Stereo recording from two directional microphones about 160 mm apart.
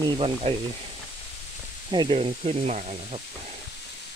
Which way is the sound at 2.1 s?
40° right (ahead or behind).